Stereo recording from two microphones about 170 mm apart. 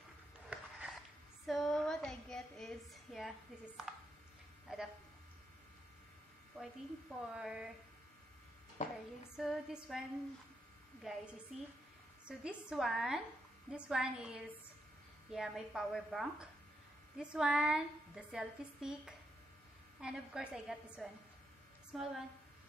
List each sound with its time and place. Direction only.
0.5 s a sound: 5° right (ahead or behind)
1.5 s a woman's voice: centre (ahead or behind)
6.6 s a woman's voice: centre (ahead or behind)
8.8 s speech: 45° left (ahead or behind)
9.4 s a woman's voice: 5° right (ahead or behind)
11.1 s a woman's voice: 5° right (ahead or behind)
12.3 s a woman's voice: 5° right (ahead or behind)